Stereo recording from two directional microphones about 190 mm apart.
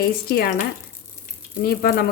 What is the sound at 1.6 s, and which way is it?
Speech, 55° left (ahead or behind).